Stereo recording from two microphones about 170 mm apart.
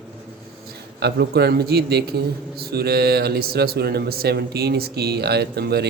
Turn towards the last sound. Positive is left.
turn(degrees=-70)  # may be behind; listen again after turning